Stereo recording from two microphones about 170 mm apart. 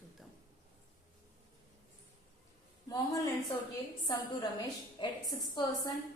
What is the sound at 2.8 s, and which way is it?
A woman's voice, 20° left (ahead or behind).